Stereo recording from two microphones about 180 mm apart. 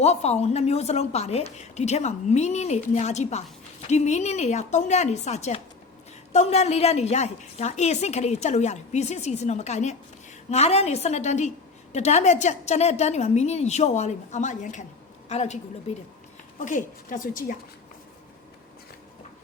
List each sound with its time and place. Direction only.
0.0 s a woman's voice: 35° left (ahead or behind)
16.6 s a woman's voice: 45° left (ahead or behind)